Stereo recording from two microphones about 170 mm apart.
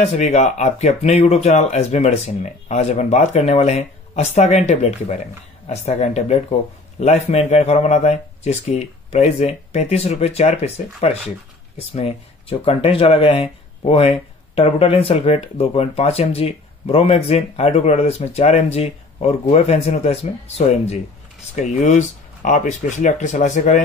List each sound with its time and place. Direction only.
0.0 s speech: 40° left (ahead or behind)